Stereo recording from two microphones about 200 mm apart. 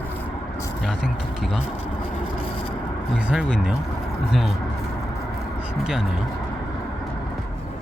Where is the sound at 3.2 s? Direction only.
5° right (ahead or behind).